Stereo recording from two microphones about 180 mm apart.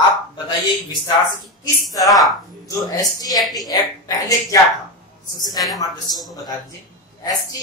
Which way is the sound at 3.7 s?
20° left (ahead or behind).